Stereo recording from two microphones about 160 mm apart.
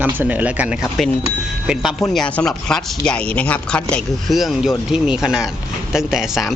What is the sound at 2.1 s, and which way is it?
Speech, 5° left (ahead or behind).